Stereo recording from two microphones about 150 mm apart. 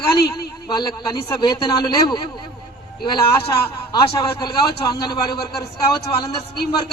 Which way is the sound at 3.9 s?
30° left (ahead or behind).